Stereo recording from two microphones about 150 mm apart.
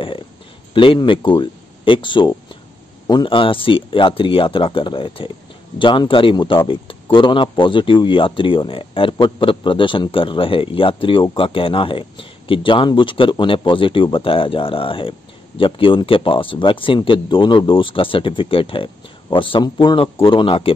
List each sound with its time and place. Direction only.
0.7 s speech: 35° left (ahead or behind)